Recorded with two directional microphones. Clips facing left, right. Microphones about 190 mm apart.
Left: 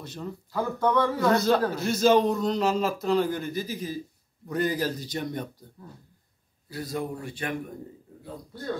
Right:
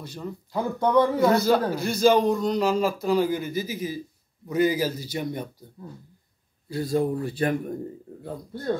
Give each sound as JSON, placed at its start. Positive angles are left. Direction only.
{"t": 0.0, "sound": "speech", "side_deg": 0}
{"t": 0.5, "sound": "speech", "side_deg": -20}
{"t": 1.3, "sound": "speech", "side_deg": 0}
{"t": 6.7, "sound": "speech", "side_deg": -30}